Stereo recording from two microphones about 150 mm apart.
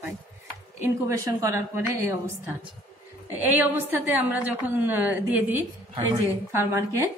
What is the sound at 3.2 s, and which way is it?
A woman's voice, 10° right (ahead or behind).